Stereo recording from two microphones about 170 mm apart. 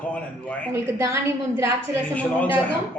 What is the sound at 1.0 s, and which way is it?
Speech, 15° right (ahead or behind).